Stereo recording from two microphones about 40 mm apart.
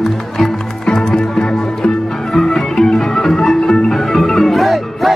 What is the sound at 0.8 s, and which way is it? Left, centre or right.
Music, centre.